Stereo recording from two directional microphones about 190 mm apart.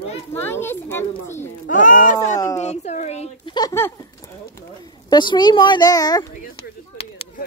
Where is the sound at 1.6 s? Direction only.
45° left (ahead or behind).